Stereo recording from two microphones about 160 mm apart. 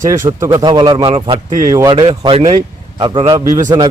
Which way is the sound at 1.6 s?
20° right (ahead or behind).